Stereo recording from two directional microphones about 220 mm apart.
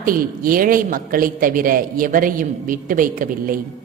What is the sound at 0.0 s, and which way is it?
A woman's voice, 40° right (ahead or behind).